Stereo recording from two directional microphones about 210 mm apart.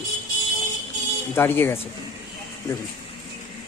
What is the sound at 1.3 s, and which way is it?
Speech, 10° left (ahead or behind).